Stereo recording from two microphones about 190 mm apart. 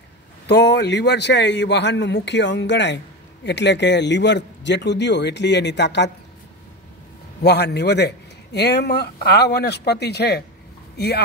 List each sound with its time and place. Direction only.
0.5 s a man's voice: 65° left (ahead or behind)
7.4 s a man's voice: 60° left (ahead or behind)